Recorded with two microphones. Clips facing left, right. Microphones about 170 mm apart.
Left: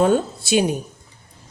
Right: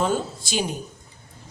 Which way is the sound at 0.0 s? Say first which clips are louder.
Left 7 dB; 60° left (ahead or behind).